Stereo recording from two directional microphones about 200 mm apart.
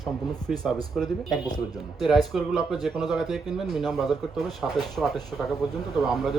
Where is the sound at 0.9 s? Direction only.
Centre (ahead or behind).